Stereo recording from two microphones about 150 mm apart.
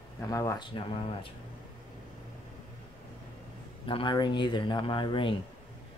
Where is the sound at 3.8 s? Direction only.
35° left (ahead or behind).